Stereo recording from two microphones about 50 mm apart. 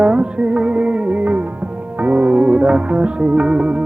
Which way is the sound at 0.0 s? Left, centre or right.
Right.